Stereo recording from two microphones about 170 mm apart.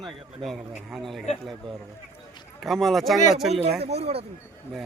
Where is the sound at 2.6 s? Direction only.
Centre (ahead or behind).